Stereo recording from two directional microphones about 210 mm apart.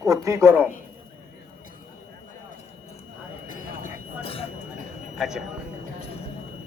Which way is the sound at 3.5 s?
30° left (ahead or behind).